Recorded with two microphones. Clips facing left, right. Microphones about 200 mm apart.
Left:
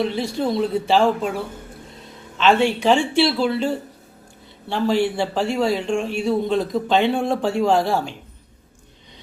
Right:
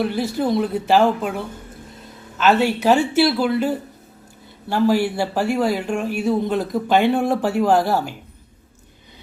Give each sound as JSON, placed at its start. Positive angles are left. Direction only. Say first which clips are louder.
{"t": 0.3, "sound": "speech", "louder": "even", "side_deg": -5}
{"t": 2.4, "sound": "speech", "louder": "even", "side_deg": -5}